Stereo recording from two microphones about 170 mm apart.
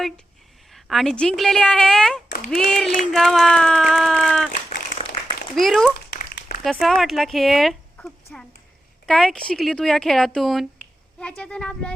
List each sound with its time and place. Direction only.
0.7 s speech: centre (ahead or behind)
5.5 s speech: centre (ahead or behind)
6.1 s a sound: 80° left
6.6 s speech: centre (ahead or behind)